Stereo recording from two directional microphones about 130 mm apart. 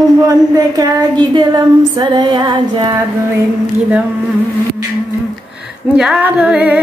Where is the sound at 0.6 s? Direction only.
25° right (ahead or behind).